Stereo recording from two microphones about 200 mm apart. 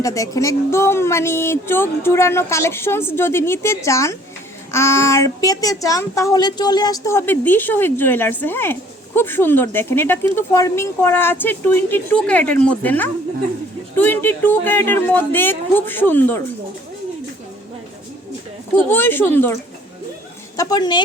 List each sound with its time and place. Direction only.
0.0 s a child's voice: 15° left (ahead or behind)
18.9 s a child's voice: 10° left (ahead or behind)
20.6 s a woman's voice: 20° left (ahead or behind)